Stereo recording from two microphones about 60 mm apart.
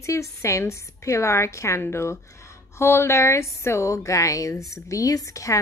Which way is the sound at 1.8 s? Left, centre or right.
Left.